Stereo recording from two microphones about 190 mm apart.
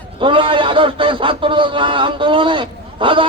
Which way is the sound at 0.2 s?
25° right (ahead or behind).